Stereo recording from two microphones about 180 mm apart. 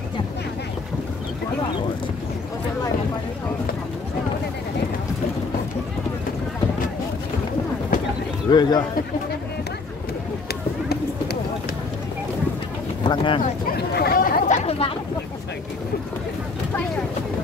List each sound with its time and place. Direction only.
8.5 s a man's voice: 25° left (ahead or behind)
10.5 s run: 65° left (ahead or behind)
13.0 s a sound: 25° left (ahead or behind)
13.4 s chatter: 60° left (ahead or behind); by 14.9 s 35° left (ahead or behind)